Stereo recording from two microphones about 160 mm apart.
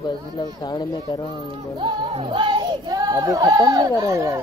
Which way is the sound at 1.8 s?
30° right (ahead or behind).